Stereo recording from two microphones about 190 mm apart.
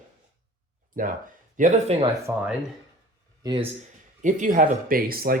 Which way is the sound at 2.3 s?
10° right (ahead or behind).